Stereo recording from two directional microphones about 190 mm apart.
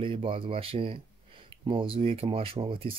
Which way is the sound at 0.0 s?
30° right (ahead or behind).